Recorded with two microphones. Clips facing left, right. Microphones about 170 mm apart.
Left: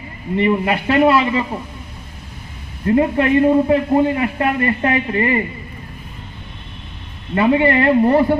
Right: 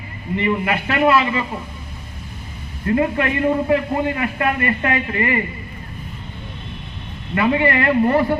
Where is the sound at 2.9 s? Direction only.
30° left (ahead or behind).